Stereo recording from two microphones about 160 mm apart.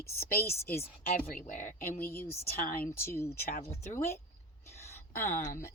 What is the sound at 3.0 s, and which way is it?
Speech, 15° left (ahead or behind).